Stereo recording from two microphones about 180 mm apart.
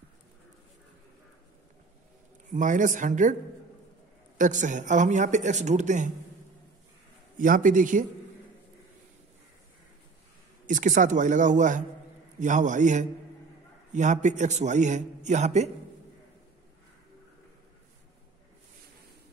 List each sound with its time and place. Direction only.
2.5 s speech: 45° right (ahead or behind)
4.4 s speech: 45° right (ahead or behind)
7.3 s speech: 50° right (ahead or behind)
10.7 s a man's voice: 45° right (ahead or behind)